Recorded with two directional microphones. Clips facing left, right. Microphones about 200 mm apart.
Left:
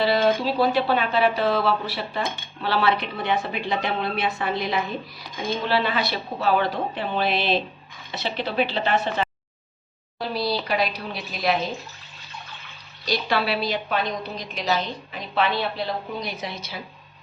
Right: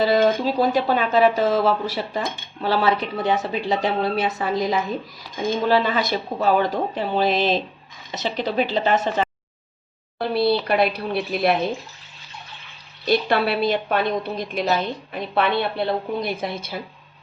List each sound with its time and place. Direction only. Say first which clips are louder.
0.0 s a woman's voice: right 3 dB; 45° right (ahead or behind)
10.2 s speech: right 6 dB; 60° right (ahead or behind)
13.1 s a woman's voice: right 5 dB; 55° right (ahead or behind)